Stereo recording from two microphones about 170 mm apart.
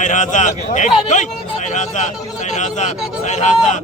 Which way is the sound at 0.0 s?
45° left (ahead or behind).